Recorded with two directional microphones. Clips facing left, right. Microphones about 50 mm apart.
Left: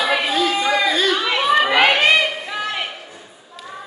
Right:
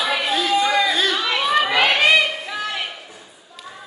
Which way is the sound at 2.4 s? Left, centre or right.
Centre.